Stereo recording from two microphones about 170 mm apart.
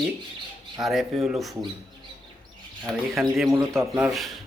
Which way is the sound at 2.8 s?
Centre (ahead or behind).